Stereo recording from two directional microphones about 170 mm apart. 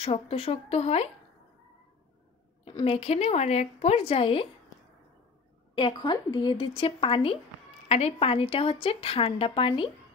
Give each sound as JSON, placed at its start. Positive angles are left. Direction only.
{"t": 0.0, "sound": "speech", "side_deg": 35}
{"t": 2.6, "sound": "speech", "side_deg": 30}
{"t": 5.8, "sound": "speech", "side_deg": 30}